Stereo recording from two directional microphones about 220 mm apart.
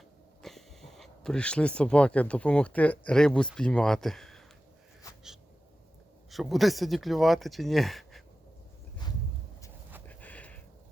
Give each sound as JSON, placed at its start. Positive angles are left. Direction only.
{"t": 0.4, "sound": "speech", "side_deg": 0}
{"t": 6.3, "sound": "speech", "side_deg": 0}
{"t": 10.1, "sound": "a sound", "side_deg": 5}